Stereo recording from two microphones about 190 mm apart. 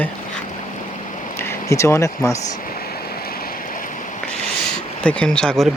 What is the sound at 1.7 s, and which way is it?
Speech, 15° left (ahead or behind).